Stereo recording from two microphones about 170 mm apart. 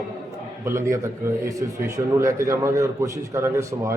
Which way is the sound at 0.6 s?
15° right (ahead or behind).